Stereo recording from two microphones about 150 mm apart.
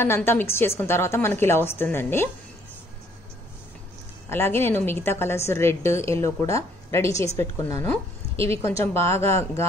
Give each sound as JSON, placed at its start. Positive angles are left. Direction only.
{"t": 0.0, "sound": "a woman's voice", "side_deg": 15}
{"t": 4.3, "sound": "a woman's voice", "side_deg": 15}